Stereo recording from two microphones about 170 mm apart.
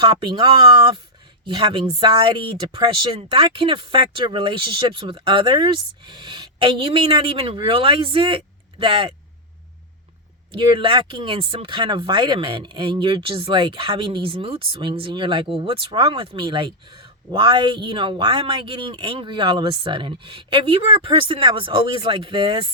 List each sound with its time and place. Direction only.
0.0 s speech: 25° right (ahead or behind)
10.5 s speech: 30° right (ahead or behind)